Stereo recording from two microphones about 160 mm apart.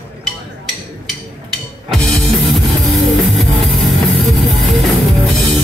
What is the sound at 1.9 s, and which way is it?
Music, centre (ahead or behind).